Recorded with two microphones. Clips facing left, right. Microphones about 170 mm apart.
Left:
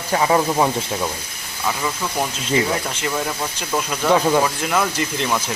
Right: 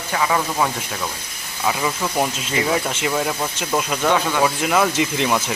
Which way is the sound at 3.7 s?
5° right (ahead or behind).